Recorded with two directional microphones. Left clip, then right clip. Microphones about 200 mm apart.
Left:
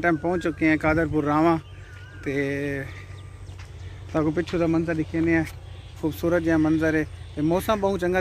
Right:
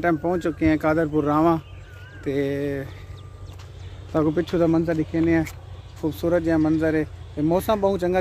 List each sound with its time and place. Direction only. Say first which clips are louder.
0.0 s speech: right 1 dB; 5° right (ahead or behind)
4.1 s speech: right 2 dB; 5° right (ahead or behind)
4.5 s speech: right 3 dB; 20° right (ahead or behind)
5.9 s speech: right 1 dB; 10° left (ahead or behind)